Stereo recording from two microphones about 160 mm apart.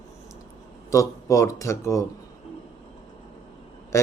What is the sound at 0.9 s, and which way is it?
Speech, 20° left (ahead or behind).